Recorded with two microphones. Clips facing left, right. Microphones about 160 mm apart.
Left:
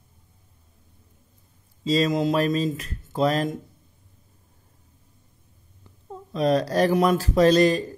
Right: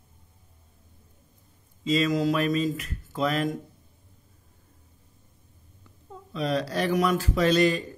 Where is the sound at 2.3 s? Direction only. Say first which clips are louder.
Left 2 dB; 35° left (ahead or behind).